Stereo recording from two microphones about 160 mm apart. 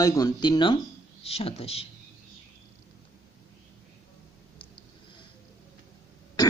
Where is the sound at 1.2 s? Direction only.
40° left (ahead or behind).